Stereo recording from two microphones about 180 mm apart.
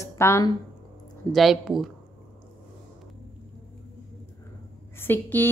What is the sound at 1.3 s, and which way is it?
Speech, centre (ahead or behind).